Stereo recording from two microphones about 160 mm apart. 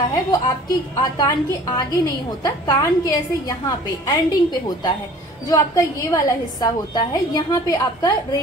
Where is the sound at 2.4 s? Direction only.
25° left (ahead or behind).